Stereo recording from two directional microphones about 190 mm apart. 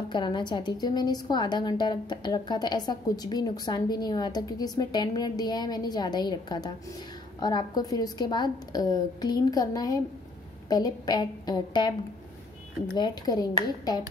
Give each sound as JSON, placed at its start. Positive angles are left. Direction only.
{"t": 0.1, "sound": "a woman's voice", "side_deg": 25}
{"t": 12.9, "sound": "a woman's voice", "side_deg": 20}